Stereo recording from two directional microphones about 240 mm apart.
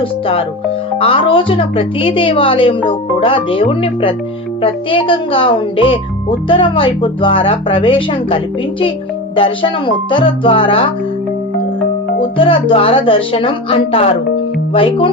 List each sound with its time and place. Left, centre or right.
0.0 s speech: left
12.4 s speech: left